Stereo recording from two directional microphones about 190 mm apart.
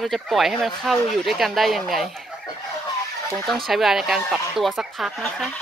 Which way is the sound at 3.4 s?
Centre (ahead or behind).